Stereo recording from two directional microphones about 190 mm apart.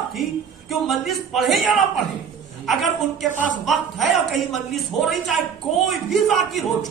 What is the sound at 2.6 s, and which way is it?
Speech, centre (ahead or behind).